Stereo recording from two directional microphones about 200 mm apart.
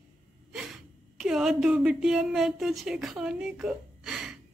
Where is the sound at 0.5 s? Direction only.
Centre (ahead or behind).